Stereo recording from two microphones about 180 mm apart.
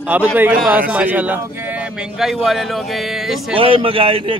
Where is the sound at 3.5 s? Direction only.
30° right (ahead or behind).